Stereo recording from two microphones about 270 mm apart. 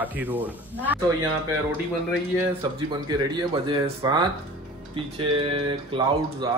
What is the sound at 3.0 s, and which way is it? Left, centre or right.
Speech, centre.